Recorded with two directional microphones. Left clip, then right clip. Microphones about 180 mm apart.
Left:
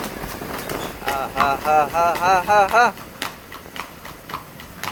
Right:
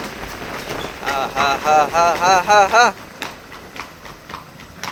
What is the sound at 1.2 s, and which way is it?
Speech, 15° right (ahead or behind).